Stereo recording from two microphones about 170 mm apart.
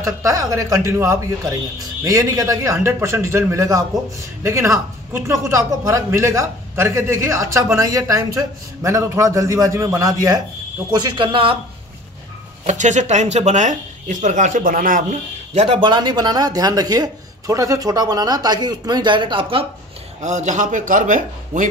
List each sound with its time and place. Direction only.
0.0 s speech: 20° right (ahead or behind)
12.6 s speech: 45° right (ahead or behind)
15.6 s speech: 30° right (ahead or behind)
20.2 s speech: 45° right (ahead or behind)